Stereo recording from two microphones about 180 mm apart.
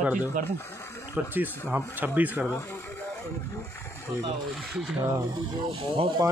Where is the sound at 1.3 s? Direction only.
10° right (ahead or behind).